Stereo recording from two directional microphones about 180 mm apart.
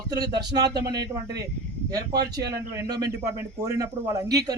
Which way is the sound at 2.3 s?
20° right (ahead or behind).